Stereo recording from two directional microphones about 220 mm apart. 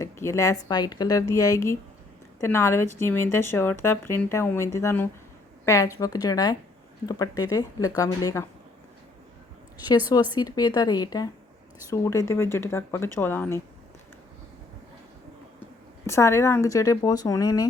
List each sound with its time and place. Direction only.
0.0 s a woman's voice: 15° left (ahead or behind)
10.3 s a woman's voice: 20° left (ahead or behind)
16.0 s a woman's voice: 10° left (ahead or behind)